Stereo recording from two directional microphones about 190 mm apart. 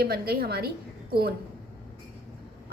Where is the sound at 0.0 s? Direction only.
55° right (ahead or behind).